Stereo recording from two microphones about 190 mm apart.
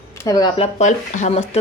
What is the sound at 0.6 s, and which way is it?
Speech, 40° left (ahead or behind).